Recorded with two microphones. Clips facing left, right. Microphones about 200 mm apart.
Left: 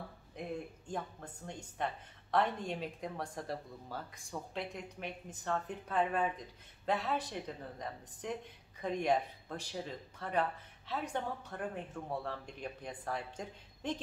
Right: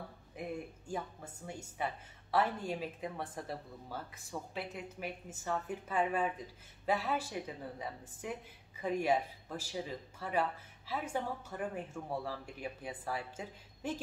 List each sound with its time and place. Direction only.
0.4 s speech: 5° right (ahead or behind)